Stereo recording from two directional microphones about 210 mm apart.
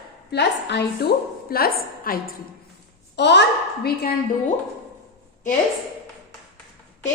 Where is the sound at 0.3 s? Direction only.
55° left (ahead or behind).